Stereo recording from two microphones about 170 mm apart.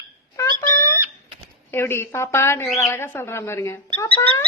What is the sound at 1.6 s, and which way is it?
A woman's voice, 15° left (ahead or behind).